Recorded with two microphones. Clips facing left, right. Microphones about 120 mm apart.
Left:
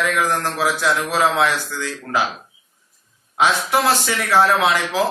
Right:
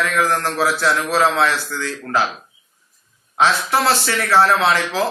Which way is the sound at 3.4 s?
15° left (ahead or behind).